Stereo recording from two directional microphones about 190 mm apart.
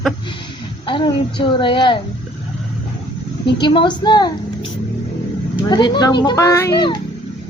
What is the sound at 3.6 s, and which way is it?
Speech, 25° left (ahead or behind).